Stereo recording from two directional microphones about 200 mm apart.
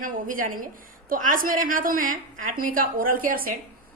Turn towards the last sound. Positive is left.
turn(degrees=-45)  # may be behind; listen again after turning